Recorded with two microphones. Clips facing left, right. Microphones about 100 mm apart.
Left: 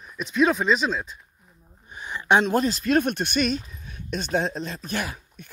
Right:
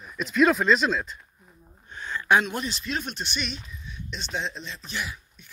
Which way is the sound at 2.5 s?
40° left (ahead or behind).